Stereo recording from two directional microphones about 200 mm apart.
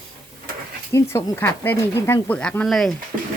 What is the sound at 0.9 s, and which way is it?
Speech, 15° left (ahead or behind).